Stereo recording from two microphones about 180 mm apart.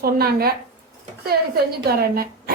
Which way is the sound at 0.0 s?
60° right (ahead or behind).